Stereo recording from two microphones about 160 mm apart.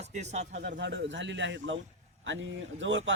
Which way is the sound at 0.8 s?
90° right.